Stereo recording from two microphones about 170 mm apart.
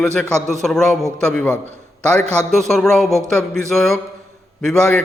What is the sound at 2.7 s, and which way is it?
A man's voice, centre (ahead or behind).